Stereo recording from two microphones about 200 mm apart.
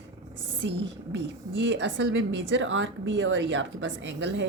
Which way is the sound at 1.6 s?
65° right (ahead or behind).